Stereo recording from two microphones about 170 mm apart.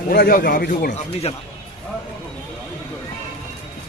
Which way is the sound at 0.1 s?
60° left (ahead or behind).